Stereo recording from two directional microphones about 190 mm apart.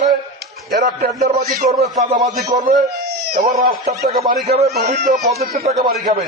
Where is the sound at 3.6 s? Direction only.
40° right (ahead or behind).